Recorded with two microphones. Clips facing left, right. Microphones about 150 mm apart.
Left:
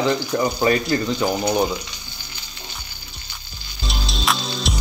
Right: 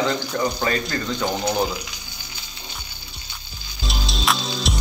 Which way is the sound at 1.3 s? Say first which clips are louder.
Left 1 dB; centre (ahead or behind).